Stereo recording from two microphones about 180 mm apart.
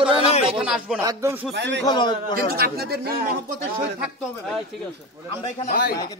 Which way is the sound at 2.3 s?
55° right (ahead or behind).